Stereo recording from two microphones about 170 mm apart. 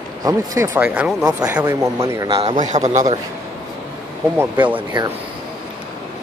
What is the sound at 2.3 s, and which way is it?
Speech, 30° right (ahead or behind).